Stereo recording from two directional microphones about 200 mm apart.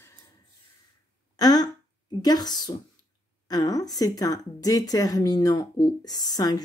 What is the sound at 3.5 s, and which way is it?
Speech, 20° left (ahead or behind).